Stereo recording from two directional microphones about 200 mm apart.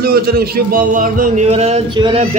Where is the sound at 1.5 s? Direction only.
30° right (ahead or behind).